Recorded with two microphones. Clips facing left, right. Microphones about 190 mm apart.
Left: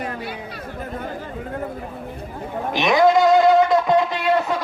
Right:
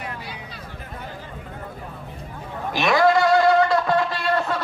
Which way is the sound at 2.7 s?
20° left (ahead or behind).